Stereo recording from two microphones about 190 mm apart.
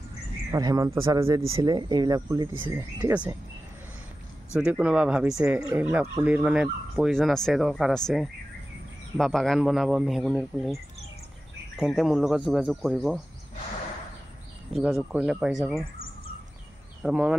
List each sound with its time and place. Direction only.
0.5 s speech: 20° right (ahead or behind)
2.6 s speech: 10° right (ahead or behind)
4.6 s speech: 5° right (ahead or behind)
14.7 s speech: centre (ahead or behind)
17.0 s speech: 5° right (ahead or behind)